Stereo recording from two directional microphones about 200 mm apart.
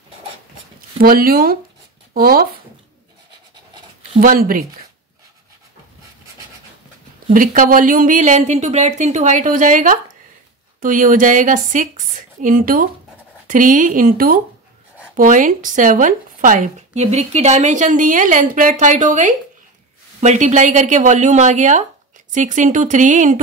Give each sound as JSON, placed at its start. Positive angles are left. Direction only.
{"t": 0.7, "sound": "speech", "side_deg": -45}
{"t": 4.2, "sound": "speech", "side_deg": -45}
{"t": 7.3, "sound": "a woman's voice", "side_deg": -45}